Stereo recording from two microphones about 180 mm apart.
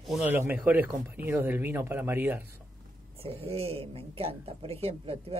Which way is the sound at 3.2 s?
35° right (ahead or behind).